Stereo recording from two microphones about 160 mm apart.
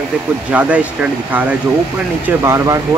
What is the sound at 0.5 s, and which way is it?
Speech, 10° right (ahead or behind).